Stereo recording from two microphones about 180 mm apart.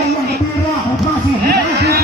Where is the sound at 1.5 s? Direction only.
65° right (ahead or behind).